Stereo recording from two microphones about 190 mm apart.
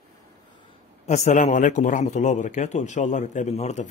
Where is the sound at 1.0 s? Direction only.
35° left (ahead or behind).